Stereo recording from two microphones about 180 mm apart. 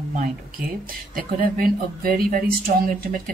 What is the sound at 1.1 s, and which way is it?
Speech, 50° right (ahead or behind).